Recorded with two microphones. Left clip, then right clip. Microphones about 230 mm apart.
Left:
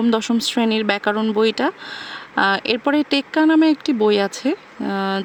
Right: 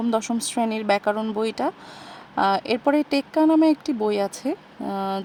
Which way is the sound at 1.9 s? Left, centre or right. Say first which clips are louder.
Left 6 dB; left.